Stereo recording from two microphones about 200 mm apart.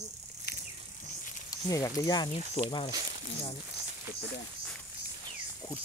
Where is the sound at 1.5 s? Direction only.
15° left (ahead or behind).